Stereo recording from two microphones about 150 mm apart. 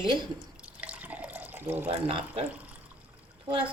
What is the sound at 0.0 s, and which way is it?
Speech, 30° right (ahead or behind).